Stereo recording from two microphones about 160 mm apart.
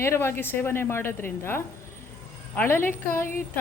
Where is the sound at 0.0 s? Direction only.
15° left (ahead or behind).